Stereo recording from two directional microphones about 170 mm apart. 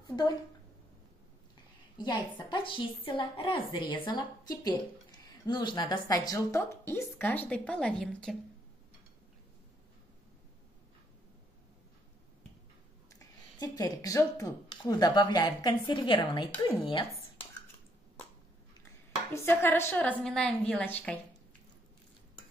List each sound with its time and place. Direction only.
0.0 s a sound: 25° left (ahead or behind)
2.0 s a woman's voice: 25° left (ahead or behind); by 8.4 s 5° left (ahead or behind)
13.1 s a woman's voice: 20° left (ahead or behind)
19.3 s a woman's voice: 15° left (ahead or behind)